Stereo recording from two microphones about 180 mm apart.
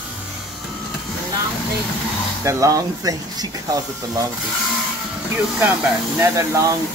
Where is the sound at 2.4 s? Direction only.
20° right (ahead or behind).